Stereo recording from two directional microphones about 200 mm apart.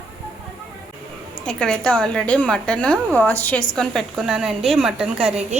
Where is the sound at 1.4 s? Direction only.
5° left (ahead or behind).